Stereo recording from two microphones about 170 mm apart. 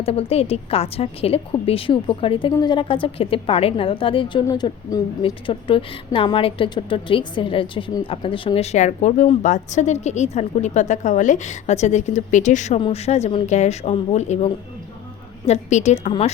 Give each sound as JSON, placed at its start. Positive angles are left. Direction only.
{"t": 0.0, "sound": "a woman's voice", "side_deg": 35}